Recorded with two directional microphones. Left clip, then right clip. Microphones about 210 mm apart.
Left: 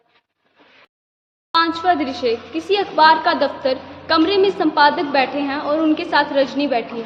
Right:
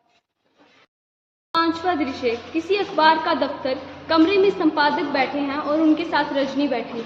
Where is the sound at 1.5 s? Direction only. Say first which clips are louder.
Left 4 dB; 50° left (ahead or behind).